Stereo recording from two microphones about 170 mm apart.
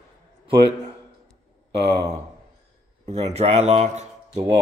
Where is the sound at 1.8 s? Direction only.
25° right (ahead or behind).